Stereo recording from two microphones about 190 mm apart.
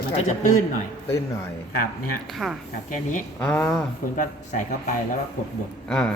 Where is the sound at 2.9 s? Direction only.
40° left (ahead or behind).